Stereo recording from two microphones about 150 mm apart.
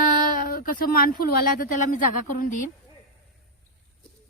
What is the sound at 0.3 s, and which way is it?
Speech, 70° left (ahead or behind).